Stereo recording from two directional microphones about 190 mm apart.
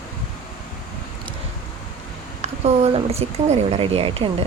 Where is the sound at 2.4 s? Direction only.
35° right (ahead or behind).